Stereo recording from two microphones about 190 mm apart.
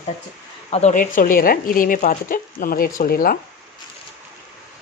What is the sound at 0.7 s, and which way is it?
Speech, 35° left (ahead or behind).